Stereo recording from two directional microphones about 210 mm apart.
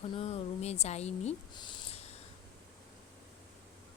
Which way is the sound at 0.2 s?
30° left (ahead or behind).